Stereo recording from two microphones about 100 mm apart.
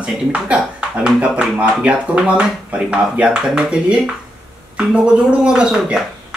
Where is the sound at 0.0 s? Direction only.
10° right (ahead or behind).